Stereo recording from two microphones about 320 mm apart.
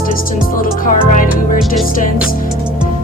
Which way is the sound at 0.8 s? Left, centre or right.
Left.